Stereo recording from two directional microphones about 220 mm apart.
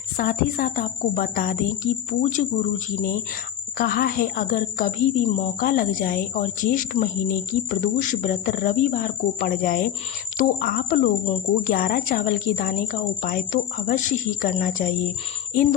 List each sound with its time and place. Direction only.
0.2 s speech: 40° left (ahead or behind)